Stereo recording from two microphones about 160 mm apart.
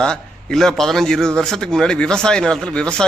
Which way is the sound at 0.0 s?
5° left (ahead or behind).